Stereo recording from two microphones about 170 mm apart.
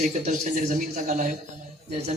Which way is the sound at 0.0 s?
45° right (ahead or behind).